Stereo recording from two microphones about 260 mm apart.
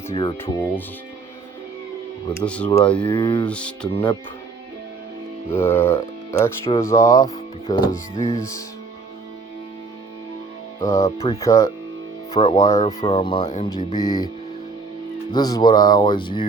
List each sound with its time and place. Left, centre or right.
0.1 s speech: left
2.3 s speech: centre
3.0 s speech: centre
3.4 s speech: centre
5.5 s speech: centre
10.8 s speech: centre
11.0 s speech: left
11.3 s speech: centre
15.3 s speech: centre